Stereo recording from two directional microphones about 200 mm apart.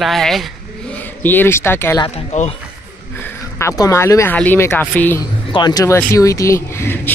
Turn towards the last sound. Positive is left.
turn(degrees=10)  # may be behind; listen again after turning